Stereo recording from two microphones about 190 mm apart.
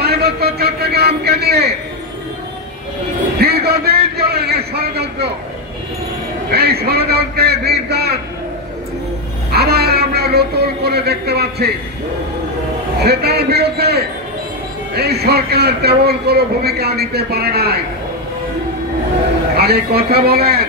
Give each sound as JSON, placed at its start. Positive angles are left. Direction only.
{"t": 0.0, "sound": "a sound", "side_deg": -55}
{"t": 3.3, "sound": "a man's voice", "side_deg": -55}
{"t": 6.5, "sound": "a man's voice", "side_deg": -55}
{"t": 9.5, "sound": "a man's voice", "side_deg": -55}
{"t": 13.0, "sound": "a man's voice", "side_deg": -55}
{"t": 19.5, "sound": "a man's voice", "side_deg": -55}